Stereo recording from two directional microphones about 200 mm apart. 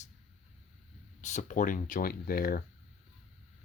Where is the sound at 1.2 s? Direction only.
40° left (ahead or behind).